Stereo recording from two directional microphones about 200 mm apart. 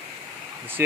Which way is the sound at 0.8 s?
10° right (ahead or behind).